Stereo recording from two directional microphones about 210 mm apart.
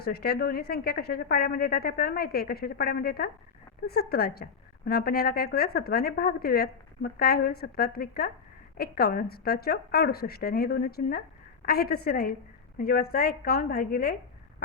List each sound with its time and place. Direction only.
0.0 s a woman's voice: 45° left (ahead or behind)